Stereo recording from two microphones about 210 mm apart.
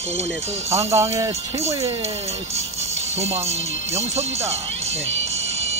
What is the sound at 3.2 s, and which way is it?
Speech, 30° right (ahead or behind).